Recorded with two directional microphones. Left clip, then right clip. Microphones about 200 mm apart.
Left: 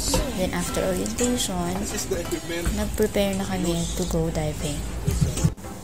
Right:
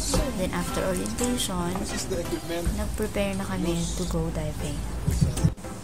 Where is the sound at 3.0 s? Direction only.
15° left (ahead or behind).